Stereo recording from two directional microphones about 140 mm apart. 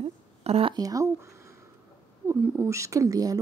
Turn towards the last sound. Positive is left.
turn(degrees=-25)  # may be behind; listen again after turning